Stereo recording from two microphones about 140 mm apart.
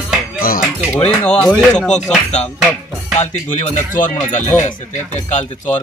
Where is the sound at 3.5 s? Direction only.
65° left (ahead or behind).